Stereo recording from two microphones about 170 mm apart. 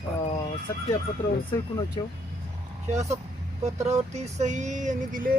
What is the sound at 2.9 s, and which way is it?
Speech, 40° right (ahead or behind).